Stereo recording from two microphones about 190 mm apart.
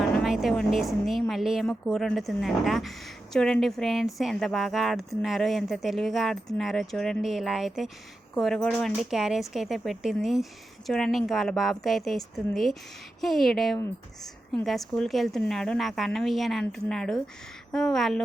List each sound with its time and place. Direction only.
0.0 s speech: centre (ahead or behind)